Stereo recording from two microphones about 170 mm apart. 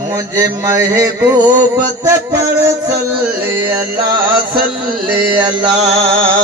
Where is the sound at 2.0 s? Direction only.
15° right (ahead or behind).